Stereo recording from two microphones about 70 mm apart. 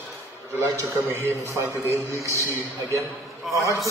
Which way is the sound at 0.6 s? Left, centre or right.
Right.